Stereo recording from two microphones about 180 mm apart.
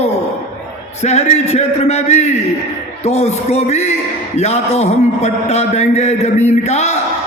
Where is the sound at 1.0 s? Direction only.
35° left (ahead or behind).